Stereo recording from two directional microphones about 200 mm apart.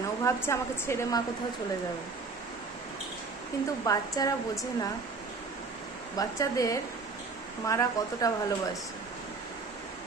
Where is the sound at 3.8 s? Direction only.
20° left (ahead or behind).